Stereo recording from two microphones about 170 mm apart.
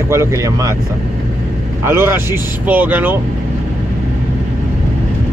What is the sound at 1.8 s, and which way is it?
Speech, 15° right (ahead or behind).